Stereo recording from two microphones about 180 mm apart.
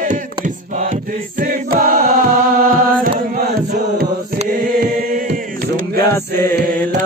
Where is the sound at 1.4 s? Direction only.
55° right (ahead or behind).